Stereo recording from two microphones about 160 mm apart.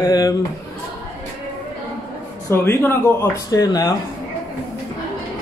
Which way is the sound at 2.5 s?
15° left (ahead or behind).